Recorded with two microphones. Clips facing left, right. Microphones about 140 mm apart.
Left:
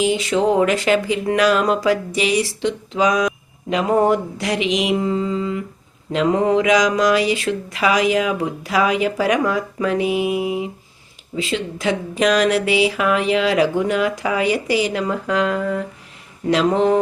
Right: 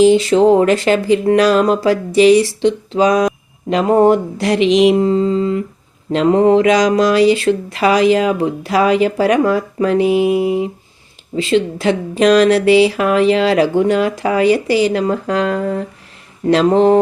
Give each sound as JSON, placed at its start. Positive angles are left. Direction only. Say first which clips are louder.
{"t": 0.0, "sound": "speech", "louder": "right 8 dB", "side_deg": -35}
{"t": 4.5, "sound": "speech", "louder": "right 8 dB", "side_deg": 10}
{"t": 4.8, "sound": "speech", "louder": "right 8 dB", "side_deg": -35}